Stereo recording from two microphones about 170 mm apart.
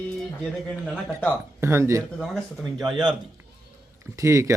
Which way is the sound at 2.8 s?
5° right (ahead or behind).